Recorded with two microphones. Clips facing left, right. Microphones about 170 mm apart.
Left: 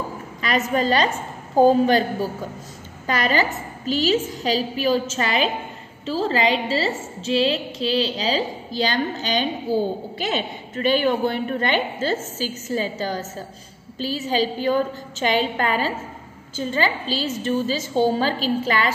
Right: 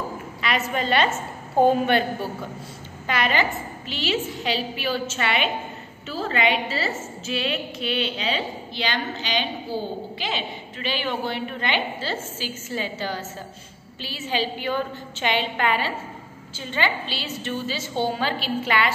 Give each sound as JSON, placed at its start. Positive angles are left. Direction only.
{"t": 0.4, "sound": "a woman's voice", "side_deg": 45}
{"t": 3.1, "sound": "a woman's voice", "side_deg": 40}